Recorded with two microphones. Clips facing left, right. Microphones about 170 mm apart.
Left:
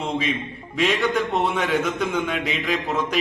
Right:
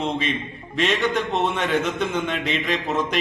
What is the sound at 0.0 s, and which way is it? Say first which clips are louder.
A man's voice: even; 5° left (ahead or behind).